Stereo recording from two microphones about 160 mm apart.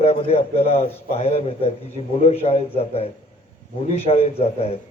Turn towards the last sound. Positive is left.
turn(degrees=40)  # may be behind; listen again after turning